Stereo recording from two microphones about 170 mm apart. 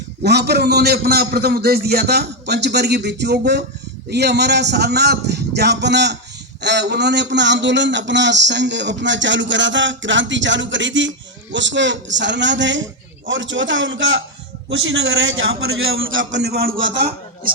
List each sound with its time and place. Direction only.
0.2 s a man's voice: 75° right (ahead or behind)
16.3 s a man's voice: 70° right (ahead or behind)
16.8 s a man's voice: 85° right